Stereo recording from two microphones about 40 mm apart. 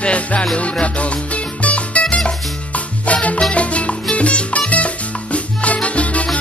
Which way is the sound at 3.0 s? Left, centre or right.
Left.